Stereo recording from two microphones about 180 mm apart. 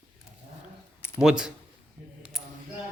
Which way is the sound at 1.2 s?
5° right (ahead or behind).